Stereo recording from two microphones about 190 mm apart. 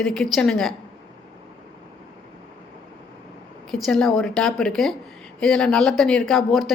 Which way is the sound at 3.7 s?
Centre (ahead or behind).